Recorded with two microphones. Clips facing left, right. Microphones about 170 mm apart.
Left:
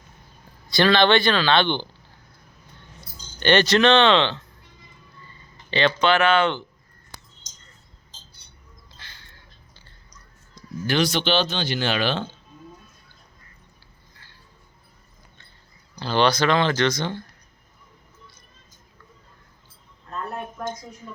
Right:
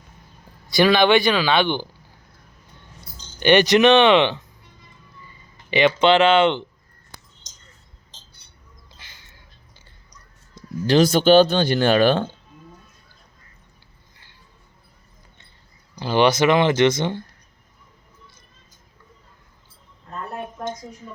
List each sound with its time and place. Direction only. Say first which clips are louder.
0.7 s speech: right 2 dB; 10° right (ahead or behind)
3.4 s speech: right 3 dB; 15° right (ahead or behind)
6.0 s speech: right 4 dB; 25° right (ahead or behind)
9.0 s bird: left 3 dB; 15° right (ahead or behind)
10.5 s a sound: right 6 dB; 35° right (ahead or behind)
11.0 s speech: right 10 dB; 45° right (ahead or behind)
16.0 s speech: right 3 dB; 15° right (ahead or behind)